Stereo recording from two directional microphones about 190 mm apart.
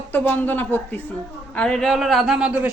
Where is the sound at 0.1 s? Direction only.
10° left (ahead or behind).